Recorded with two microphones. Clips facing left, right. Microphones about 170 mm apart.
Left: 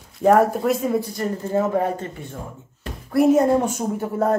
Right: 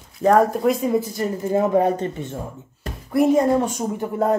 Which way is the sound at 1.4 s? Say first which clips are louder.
Right 3 dB; 15° right (ahead or behind).